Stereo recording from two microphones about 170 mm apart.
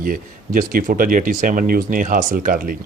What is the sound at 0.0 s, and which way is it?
Speech, 55° right (ahead or behind).